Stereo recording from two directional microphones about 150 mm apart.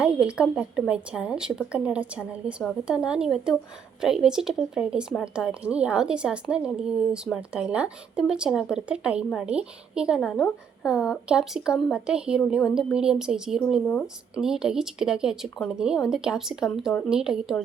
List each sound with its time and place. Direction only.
0.0 s a woman's voice: 5° right (ahead or behind)